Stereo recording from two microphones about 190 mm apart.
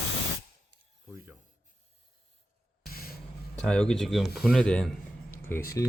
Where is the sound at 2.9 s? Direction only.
55° left (ahead or behind).